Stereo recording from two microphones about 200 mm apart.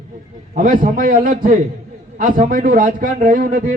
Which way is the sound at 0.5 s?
45° right (ahead or behind).